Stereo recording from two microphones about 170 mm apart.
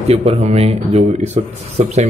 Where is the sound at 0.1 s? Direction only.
35° right (ahead or behind).